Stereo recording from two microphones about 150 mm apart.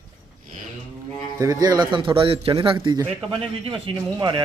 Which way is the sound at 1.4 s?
25° right (ahead or behind).